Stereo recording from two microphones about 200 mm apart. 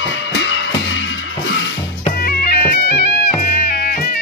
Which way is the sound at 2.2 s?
50° left (ahead or behind).